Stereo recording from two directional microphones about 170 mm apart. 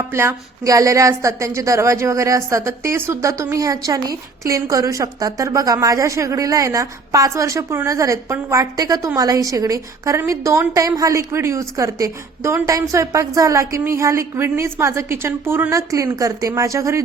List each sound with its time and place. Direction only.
0.1 s a woman's voice: 15° right (ahead or behind)